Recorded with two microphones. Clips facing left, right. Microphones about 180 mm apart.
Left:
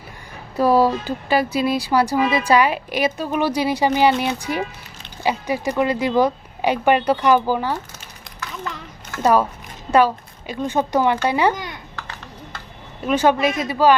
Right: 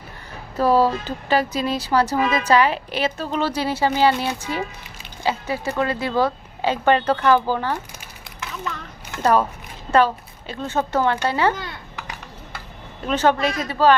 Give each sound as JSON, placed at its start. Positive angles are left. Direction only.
{"t": 0.5, "sound": "speech", "side_deg": 10}
{"t": 9.2, "sound": "a child's voice", "side_deg": 10}
{"t": 13.0, "sound": "speech", "side_deg": 10}